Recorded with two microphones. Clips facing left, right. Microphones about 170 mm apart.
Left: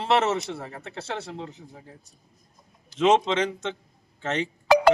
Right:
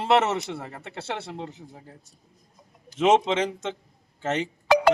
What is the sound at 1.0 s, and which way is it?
Speech, 25° right (ahead or behind).